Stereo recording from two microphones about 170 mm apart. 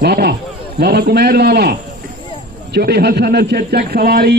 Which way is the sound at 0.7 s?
70° right (ahead or behind).